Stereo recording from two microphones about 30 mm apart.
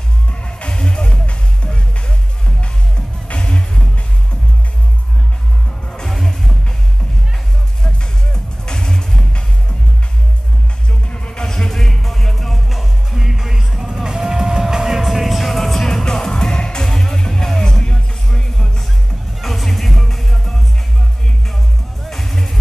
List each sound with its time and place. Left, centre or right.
0.3 s music: left
0.7 s music: left
3.3 s music: left
6.0 s music: centre
7.8 s music: left
11.1 s music: left
11.4 s music: centre
12.6 s music: centre
16.3 s music: left
19.4 s music: centre
22.0 s music: centre